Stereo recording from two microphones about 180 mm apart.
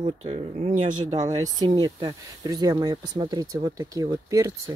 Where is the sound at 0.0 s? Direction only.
35° right (ahead or behind).